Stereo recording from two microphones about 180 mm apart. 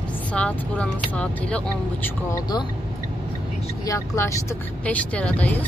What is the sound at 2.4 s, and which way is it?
Speech, 25° left (ahead or behind).